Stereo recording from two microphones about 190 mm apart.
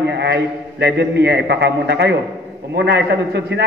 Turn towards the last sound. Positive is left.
turn(degrees=-65)  # may be behind; listen again after turning